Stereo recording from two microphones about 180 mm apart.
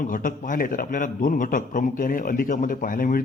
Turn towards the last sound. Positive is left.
turn(degrees=50)  # may be behind; listen again after turning